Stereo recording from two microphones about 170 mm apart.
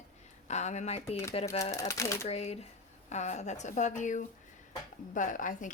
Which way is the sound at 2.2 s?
40° left (ahead or behind).